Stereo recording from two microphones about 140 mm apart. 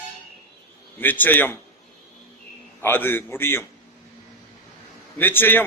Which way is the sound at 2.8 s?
15° left (ahead or behind).